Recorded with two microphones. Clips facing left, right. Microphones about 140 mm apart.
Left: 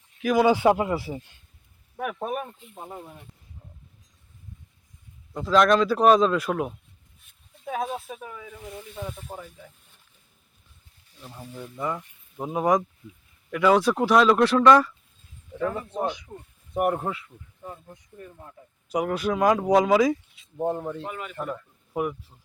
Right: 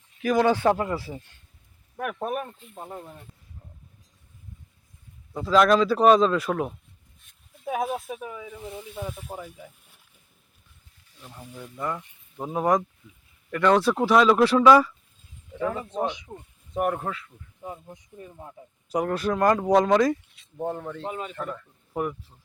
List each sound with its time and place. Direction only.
0.2 s speech: 5° left (ahead or behind)
2.0 s speech: centre (ahead or behind)
5.3 s speech: centre (ahead or behind)
7.6 s speech: 10° right (ahead or behind)
9.0 s speech: 5° right (ahead or behind)
11.2 s speech: 10° left (ahead or behind)
16.0 s speech: 20° right (ahead or behind)
16.7 s speech: 10° left (ahead or behind)
17.6 s speech: 15° right (ahead or behind)
18.9 s speech: centre (ahead or behind)
20.6 s speech: 15° left (ahead or behind)
21.0 s speech: 25° right (ahead or behind)
21.3 s speech: 15° left (ahead or behind)